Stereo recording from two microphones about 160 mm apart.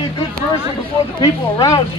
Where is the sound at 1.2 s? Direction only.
20° left (ahead or behind).